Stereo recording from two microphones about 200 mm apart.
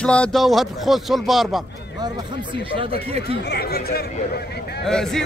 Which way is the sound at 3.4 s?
50° left (ahead or behind).